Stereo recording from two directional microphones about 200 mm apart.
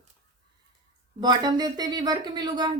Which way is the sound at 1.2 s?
20° right (ahead or behind).